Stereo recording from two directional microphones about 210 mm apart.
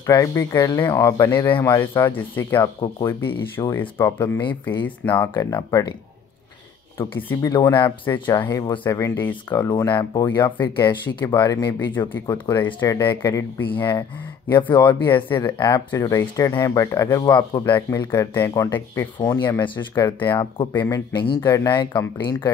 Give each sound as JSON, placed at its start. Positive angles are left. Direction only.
{"t": 0.0, "sound": "speech", "side_deg": 15}
{"t": 7.0, "sound": "speech", "side_deg": 10}